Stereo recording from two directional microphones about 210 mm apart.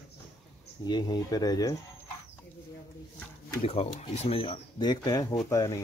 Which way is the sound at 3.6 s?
30° left (ahead or behind).